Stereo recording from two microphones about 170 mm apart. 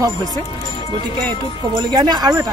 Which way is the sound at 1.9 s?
25° right (ahead or behind).